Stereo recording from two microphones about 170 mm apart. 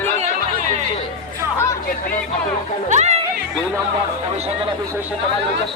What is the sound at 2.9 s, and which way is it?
Speech, 40° right (ahead or behind).